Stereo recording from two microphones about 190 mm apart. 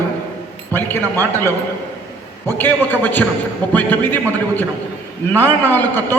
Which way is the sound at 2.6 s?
10° left (ahead or behind).